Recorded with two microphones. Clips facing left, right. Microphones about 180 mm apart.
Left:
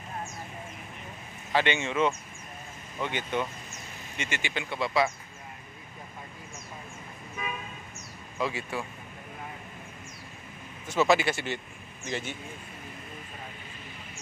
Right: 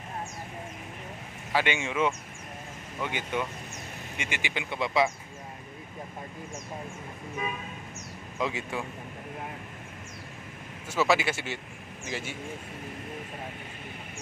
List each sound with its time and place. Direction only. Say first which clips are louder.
1.5 s speech: left 1 dB; 10° right (ahead or behind)
8.4 s speech: even; 20° right (ahead or behind)
10.9 s speech: left 2 dB; 5° right (ahead or behind)